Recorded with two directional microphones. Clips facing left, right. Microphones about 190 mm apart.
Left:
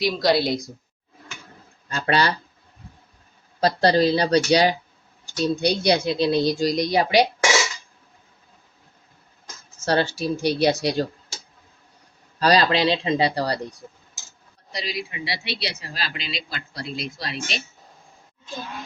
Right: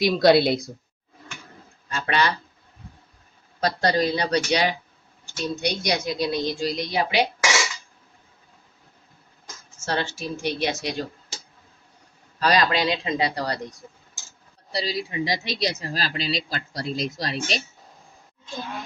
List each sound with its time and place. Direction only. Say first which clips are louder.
0.0 s a woman's voice: right 4 dB; 60° right (ahead or behind)
1.9 s a woman's voice: left 2 dB; 35° left (ahead or behind)
3.6 s a woman's voice: left 4 dB; 30° left (ahead or behind)
9.8 s a woman's voice: left 6 dB; 35° left (ahead or behind)
12.4 s speech: left 3 dB; 30° left (ahead or behind)
14.7 s speech: right 3 dB; 35° right (ahead or behind)